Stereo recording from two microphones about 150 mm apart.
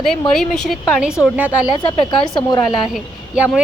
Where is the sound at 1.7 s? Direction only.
35° left (ahead or behind).